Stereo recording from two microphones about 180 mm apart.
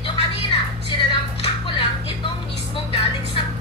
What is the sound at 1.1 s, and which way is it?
Music, 30° left (ahead or behind).